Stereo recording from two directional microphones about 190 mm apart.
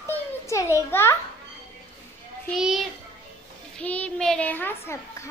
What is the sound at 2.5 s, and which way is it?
A child's voice, 5° right (ahead or behind).